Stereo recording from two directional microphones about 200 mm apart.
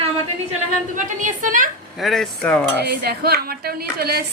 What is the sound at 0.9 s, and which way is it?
Speech, 40° right (ahead or behind).